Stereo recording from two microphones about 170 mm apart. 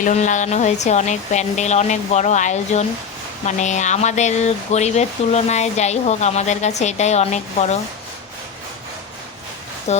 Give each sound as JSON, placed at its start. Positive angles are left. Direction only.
{"t": 0.0, "sound": "speech", "side_deg": 45}
{"t": 9.9, "sound": "speech", "side_deg": 40}